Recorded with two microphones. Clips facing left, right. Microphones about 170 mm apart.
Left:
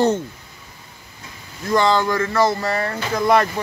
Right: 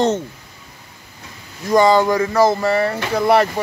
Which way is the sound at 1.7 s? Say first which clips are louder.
Right 4 dB; 15° right (ahead or behind).